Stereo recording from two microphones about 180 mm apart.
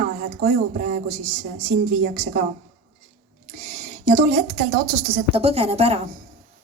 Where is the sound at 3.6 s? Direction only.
40° right (ahead or behind).